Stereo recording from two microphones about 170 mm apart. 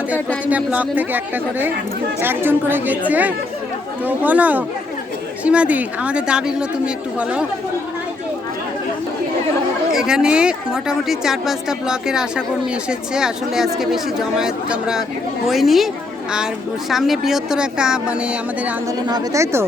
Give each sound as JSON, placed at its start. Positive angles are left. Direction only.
{"t": 0.4, "sound": "a woman's voice", "side_deg": -10}
{"t": 9.9, "sound": "speech", "side_deg": -5}
{"t": 16.9, "sound": "speech", "side_deg": 0}
{"t": 19.0, "sound": "speech", "side_deg": -20}